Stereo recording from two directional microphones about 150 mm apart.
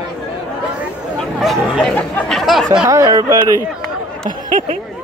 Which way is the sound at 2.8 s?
25° right (ahead or behind).